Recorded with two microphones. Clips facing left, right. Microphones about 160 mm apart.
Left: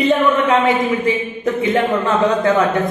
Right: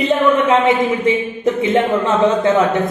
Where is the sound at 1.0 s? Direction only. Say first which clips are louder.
Right 2 dB; 25° right (ahead or behind).